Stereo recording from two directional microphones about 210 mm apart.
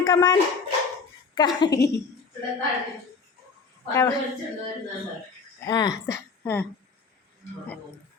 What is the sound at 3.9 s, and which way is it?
Speech, 15° left (ahead or behind).